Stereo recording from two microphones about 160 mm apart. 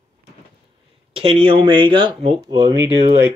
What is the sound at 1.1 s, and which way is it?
Speech, 35° right (ahead or behind).